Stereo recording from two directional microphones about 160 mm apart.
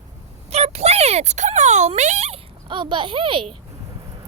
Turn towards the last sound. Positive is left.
turn(degrees=-35)  # may be behind; listen again after turning